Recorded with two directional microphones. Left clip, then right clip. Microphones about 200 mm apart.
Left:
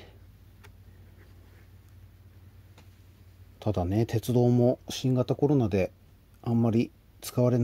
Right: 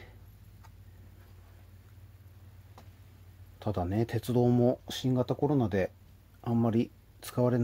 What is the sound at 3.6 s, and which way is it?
Speech, 30° left (ahead or behind).